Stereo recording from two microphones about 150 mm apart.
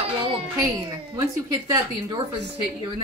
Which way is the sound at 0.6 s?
25° right (ahead or behind).